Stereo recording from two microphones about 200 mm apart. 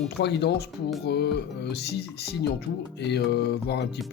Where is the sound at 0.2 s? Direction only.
55° left (ahead or behind).